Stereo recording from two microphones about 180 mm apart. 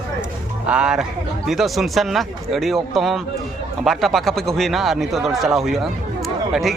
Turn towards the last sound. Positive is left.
turn(degrees=0)  # may be behind; listen again after turning